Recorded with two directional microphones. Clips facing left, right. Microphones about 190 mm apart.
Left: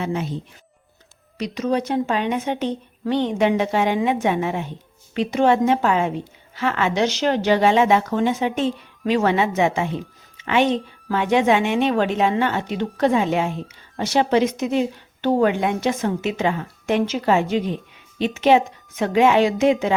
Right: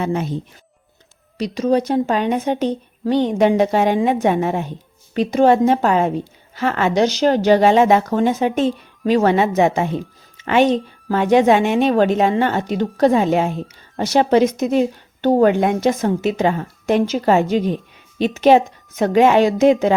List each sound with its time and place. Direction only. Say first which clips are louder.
0.0 s speech: right 4 dB; 45° right (ahead or behind)
1.4 s a woman's voice: right 5 dB; 35° right (ahead or behind)